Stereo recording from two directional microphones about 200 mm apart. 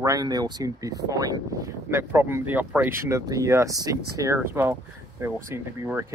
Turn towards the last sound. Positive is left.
turn(degrees=-10)  # may be behind; listen again after turning